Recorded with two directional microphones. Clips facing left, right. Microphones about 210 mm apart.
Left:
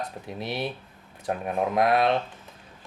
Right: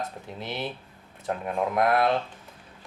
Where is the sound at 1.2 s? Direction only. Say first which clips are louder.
Left 1 dB; 20° left (ahead or behind).